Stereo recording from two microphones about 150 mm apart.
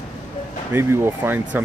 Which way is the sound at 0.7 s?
15° right (ahead or behind).